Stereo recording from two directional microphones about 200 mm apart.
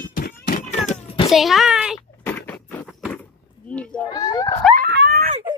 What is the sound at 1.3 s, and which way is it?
Speech, centre (ahead or behind).